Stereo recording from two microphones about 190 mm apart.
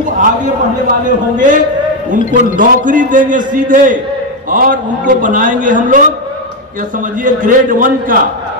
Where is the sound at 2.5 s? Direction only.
45° right (ahead or behind).